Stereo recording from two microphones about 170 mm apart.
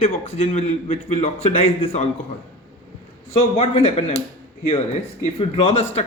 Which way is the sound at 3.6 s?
35° left (ahead or behind).